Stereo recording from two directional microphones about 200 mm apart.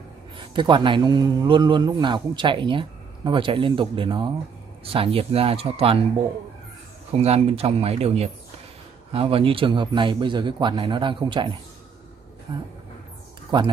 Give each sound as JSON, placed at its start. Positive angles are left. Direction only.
{"t": 0.4, "sound": "a man's voice", "side_deg": -25}
{"t": 7.2, "sound": "a man's voice", "side_deg": -30}